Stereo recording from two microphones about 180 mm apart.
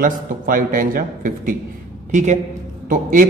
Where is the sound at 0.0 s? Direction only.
50° right (ahead or behind).